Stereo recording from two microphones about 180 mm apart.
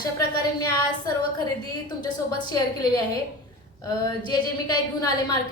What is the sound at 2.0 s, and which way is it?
A woman's voice, 20° left (ahead or behind).